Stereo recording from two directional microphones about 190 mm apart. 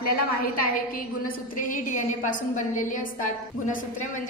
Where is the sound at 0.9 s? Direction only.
50° left (ahead or behind).